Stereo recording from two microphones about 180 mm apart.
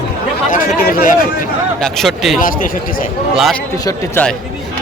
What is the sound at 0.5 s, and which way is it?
Speech, 50° left (ahead or behind).